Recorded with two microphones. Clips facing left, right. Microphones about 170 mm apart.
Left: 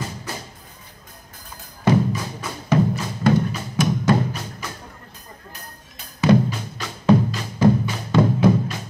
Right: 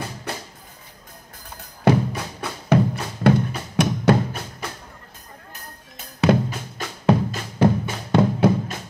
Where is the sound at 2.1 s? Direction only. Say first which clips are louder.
Left 1 dB; 60° right (ahead or behind).